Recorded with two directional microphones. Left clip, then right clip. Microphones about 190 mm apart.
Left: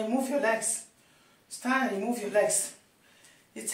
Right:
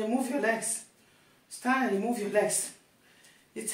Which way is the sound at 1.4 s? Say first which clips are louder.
Even; 25° left (ahead or behind).